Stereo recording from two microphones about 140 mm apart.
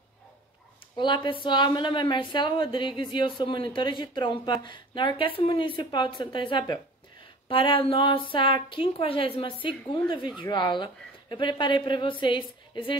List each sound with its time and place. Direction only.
0.9 s a woman's voice: 35° left (ahead or behind)